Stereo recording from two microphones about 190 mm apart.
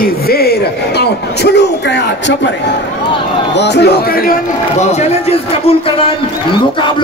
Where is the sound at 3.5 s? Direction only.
65° left (ahead or behind).